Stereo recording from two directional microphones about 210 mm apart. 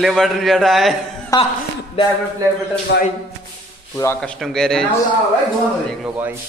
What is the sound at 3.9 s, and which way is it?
Speech, 10° left (ahead or behind).